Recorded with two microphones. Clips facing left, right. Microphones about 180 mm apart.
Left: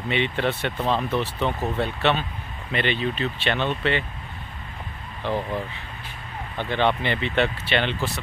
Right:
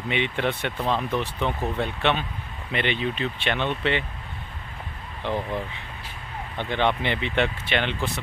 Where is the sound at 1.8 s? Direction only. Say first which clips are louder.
Left 2 dB; 15° right (ahead or behind).